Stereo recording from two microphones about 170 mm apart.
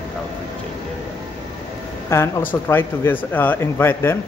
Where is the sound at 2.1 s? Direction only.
15° left (ahead or behind).